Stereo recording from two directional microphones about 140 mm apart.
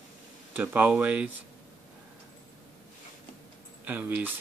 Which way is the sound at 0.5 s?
10° right (ahead or behind).